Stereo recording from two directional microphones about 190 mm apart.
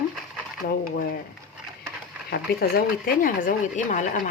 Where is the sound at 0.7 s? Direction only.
50° left (ahead or behind).